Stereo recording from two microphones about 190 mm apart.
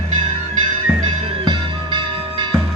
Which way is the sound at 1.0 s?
25° right (ahead or behind).